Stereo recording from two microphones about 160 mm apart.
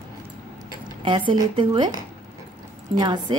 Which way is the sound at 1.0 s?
30° right (ahead or behind).